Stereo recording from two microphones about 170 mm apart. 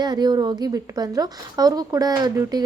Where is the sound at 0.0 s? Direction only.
25° right (ahead or behind).